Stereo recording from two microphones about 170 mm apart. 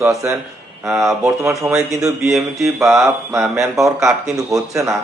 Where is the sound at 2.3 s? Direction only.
Centre (ahead or behind).